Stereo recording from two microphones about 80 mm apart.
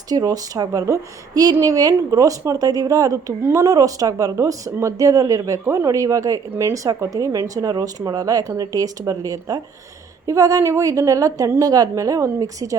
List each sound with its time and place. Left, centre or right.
0.1 s speech: right